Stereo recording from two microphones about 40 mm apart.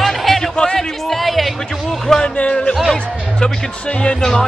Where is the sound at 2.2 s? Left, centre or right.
Left.